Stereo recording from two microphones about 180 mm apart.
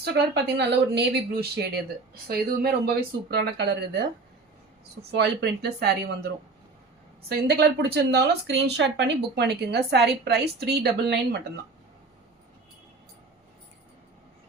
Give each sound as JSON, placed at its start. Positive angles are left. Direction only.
{"t": 0.0, "sound": "a woman's voice", "side_deg": -65}
{"t": 5.1, "sound": "a woman's voice", "side_deg": -70}